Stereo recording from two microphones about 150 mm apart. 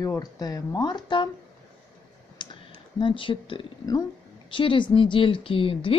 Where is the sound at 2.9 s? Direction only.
35° left (ahead or behind).